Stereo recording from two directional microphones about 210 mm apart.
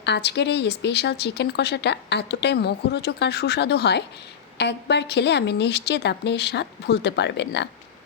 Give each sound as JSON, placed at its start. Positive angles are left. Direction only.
{"t": 0.0, "sound": "speech", "side_deg": 55}